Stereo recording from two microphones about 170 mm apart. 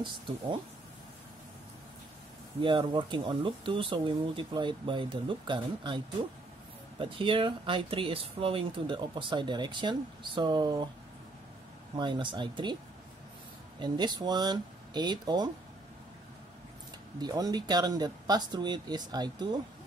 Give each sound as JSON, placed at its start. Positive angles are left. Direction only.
{"t": 2.6, "sound": "speech", "side_deg": -30}
{"t": 11.9, "sound": "speech", "side_deg": -30}
{"t": 13.7, "sound": "speech", "side_deg": -25}
{"t": 17.2, "sound": "speech", "side_deg": -25}